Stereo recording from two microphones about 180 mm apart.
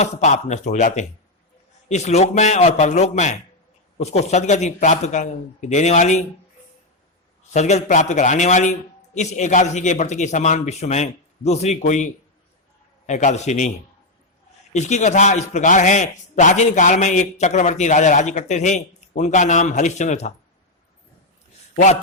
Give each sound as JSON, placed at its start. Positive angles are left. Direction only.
{"t": 0.0, "sound": "a man's voice", "side_deg": 40}
{"t": 7.5, "sound": "a man's voice", "side_deg": 40}
{"t": 13.1, "sound": "a man's voice", "side_deg": 40}
{"t": 21.8, "sound": "a man's voice", "side_deg": 40}